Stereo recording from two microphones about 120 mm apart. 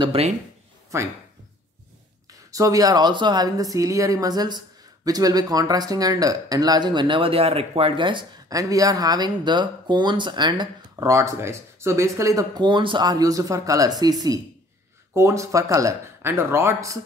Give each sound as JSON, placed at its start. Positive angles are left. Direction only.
{"t": 0.0, "sound": "speech", "side_deg": -50}
{"t": 2.5, "sound": "speech", "side_deg": -30}
{"t": 8.5, "sound": "speech", "side_deg": -30}